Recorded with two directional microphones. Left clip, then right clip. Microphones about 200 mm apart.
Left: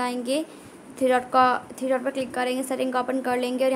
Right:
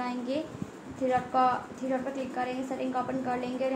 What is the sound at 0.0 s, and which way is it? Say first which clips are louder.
A woman's voice: left 7 dB; 45° left (ahead or behind).